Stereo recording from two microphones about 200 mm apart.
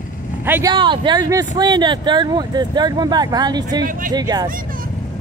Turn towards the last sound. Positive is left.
turn(degrees=-20)  # may be behind; listen again after turning